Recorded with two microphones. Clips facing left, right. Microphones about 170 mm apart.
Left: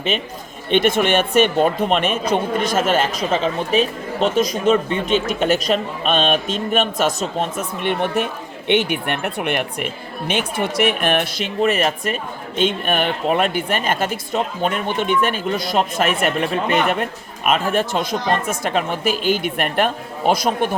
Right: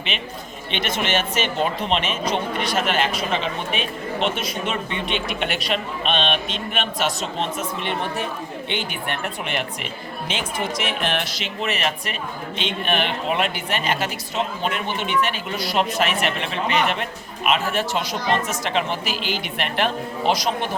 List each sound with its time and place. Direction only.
0.7 s speech: 50° left (ahead or behind)